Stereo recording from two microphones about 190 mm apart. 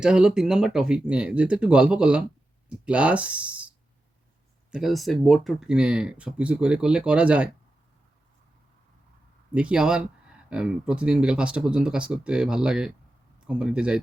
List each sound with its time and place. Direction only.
0.0 s speech: 5° right (ahead or behind)
4.7 s speech: centre (ahead or behind)
9.6 s speech: 5° right (ahead or behind)